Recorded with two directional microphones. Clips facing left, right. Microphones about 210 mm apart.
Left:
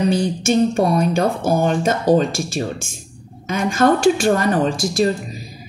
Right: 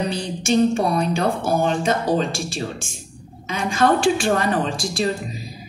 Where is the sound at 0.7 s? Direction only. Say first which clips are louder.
Left 4 dB; 45° left (ahead or behind).